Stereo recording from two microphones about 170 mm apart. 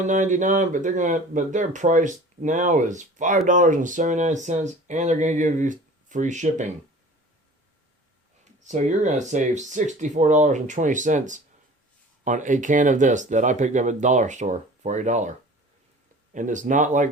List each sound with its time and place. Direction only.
0.0 s speech: 45° right (ahead or behind)
8.6 s speech: 45° right (ahead or behind)
16.3 s speech: 50° right (ahead or behind)